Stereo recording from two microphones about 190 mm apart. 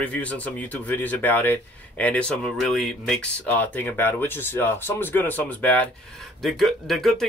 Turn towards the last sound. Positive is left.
turn(degrees=0)  # may be behind; listen again after turning